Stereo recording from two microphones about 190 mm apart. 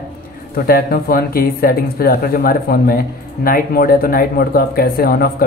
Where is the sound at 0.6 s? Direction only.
50° left (ahead or behind).